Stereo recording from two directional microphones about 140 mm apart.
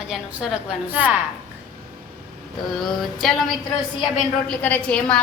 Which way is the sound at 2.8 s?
Centre (ahead or behind).